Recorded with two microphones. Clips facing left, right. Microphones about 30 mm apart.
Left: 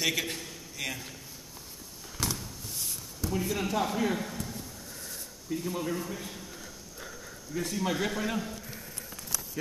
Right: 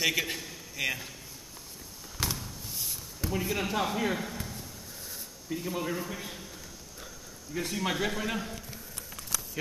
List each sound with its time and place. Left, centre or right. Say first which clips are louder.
0.0 s speech: right 1 dB; centre
2.1 s a sound: even; centre
3.3 s speech: even; centre
5.5 s speech: even; centre
7.5 s speech: even; right
8.0 s speech: even; centre